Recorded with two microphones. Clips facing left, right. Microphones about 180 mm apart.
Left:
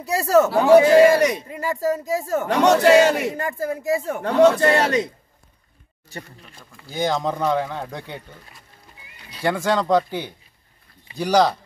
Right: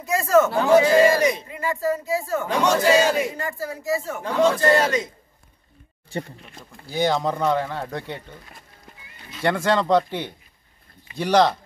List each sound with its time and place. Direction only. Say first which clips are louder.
0.0 s speech: left 1 dB; 35° left (ahead or behind)
0.7 s a man's voice: left 6 dB; 60° left (ahead or behind)
1.5 s speech: left 1 dB; 40° left (ahead or behind)
2.4 s a man's voice: left 5 dB; 65° left (ahead or behind)
6.0 s speech: right 7 dB; 30° right (ahead or behind)
6.9 s speech: right 1 dB; centre (ahead or behind)
9.4 s speech: even; centre (ahead or behind)